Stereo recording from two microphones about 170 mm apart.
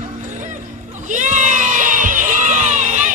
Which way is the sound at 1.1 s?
45° right (ahead or behind).